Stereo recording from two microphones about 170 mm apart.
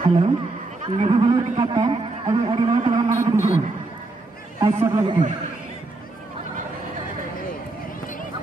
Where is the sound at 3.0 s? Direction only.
20° right (ahead or behind).